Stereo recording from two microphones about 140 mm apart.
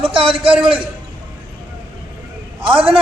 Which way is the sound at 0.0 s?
40° right (ahead or behind).